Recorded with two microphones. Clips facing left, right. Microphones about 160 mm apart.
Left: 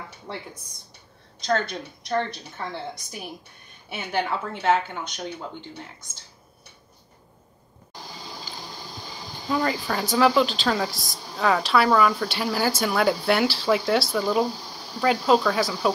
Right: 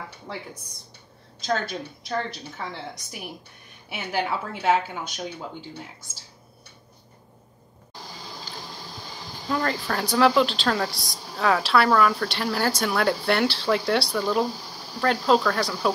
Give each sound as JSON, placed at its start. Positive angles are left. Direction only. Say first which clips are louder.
{"t": 1.4, "sound": "speech", "louder": "left 2 dB", "side_deg": -5}
{"t": 9.5, "sound": "speech", "louder": "left 1 dB", "side_deg": 0}